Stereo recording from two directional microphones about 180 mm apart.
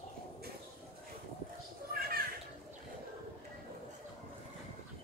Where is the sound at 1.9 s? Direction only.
55° right (ahead or behind).